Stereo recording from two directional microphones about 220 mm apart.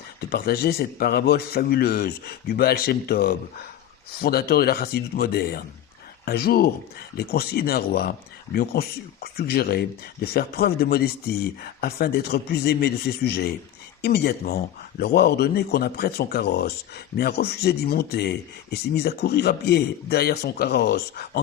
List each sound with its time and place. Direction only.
0.2 s speech: 45° left (ahead or behind)